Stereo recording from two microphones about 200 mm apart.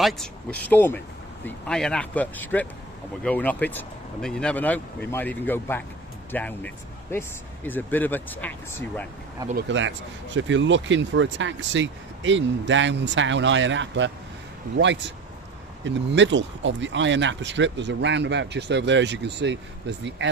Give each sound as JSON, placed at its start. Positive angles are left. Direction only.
{"t": 0.0, "sound": "speech", "side_deg": 0}
{"t": 9.6, "sound": "speech", "side_deg": -65}